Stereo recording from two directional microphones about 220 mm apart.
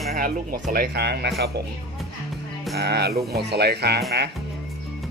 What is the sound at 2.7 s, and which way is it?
Speech, 45° right (ahead or behind).